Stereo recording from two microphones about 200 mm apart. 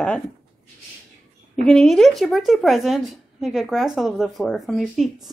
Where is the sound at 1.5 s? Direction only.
5° left (ahead or behind).